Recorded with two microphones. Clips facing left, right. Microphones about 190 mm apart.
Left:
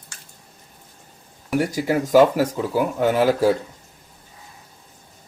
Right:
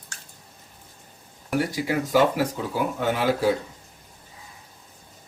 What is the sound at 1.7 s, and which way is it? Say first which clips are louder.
Speech: left 5 dB; 45° left (ahead or behind).